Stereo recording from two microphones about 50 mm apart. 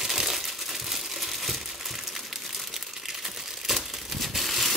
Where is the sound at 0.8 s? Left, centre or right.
Centre.